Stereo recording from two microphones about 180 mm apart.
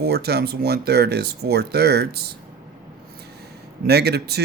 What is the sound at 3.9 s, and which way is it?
Speech, 65° right (ahead or behind).